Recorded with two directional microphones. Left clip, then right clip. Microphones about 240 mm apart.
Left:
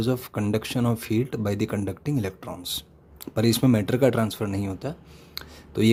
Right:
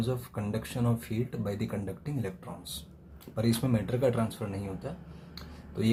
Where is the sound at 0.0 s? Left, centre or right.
Left.